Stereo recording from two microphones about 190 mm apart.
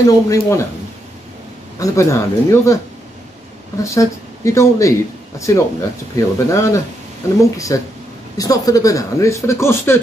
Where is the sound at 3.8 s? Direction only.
15° left (ahead or behind).